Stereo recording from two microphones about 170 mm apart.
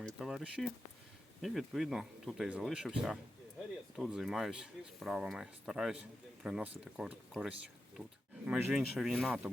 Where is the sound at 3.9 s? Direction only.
Centre (ahead or behind).